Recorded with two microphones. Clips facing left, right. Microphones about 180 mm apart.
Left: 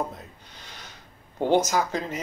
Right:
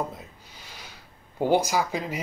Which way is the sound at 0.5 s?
5° right (ahead or behind).